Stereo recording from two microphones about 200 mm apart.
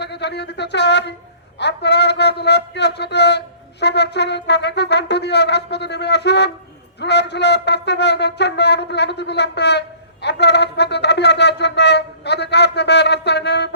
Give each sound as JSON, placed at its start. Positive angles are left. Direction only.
{"t": 0.0, "sound": "a man's voice", "side_deg": 55}